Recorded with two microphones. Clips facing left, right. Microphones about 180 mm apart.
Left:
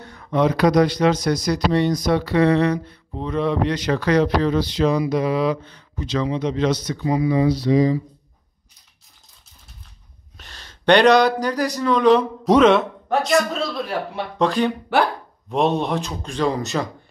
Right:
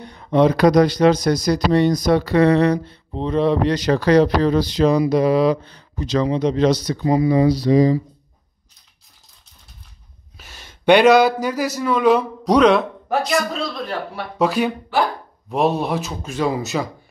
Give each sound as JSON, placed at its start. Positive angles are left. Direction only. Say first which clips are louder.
{"t": 0.0, "sound": "speech", "louder": "right 4 dB", "side_deg": -20}
{"t": 10.3, "sound": "speech", "louder": "right 1 dB", "side_deg": -5}